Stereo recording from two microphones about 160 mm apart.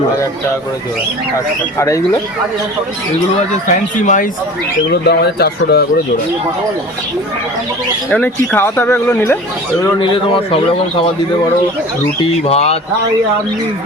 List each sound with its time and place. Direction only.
3.7 s speech: 50° left (ahead or behind)
4.9 s speech: 85° left
8.1 s speech: 10° left (ahead or behind); by 10.6 s 30° left (ahead or behind)
12.5 s a sound: 40° left (ahead or behind)